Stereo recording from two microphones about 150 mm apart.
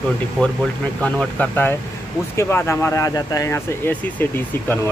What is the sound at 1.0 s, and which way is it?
Speech, 10° left (ahead or behind).